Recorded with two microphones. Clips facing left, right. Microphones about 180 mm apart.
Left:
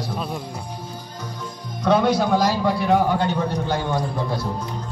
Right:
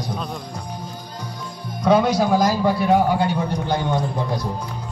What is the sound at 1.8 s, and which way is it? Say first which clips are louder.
A man's voice: right 1 dB; 10° right (ahead or behind).